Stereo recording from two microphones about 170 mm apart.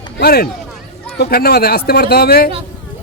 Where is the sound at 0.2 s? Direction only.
70° left (ahead or behind).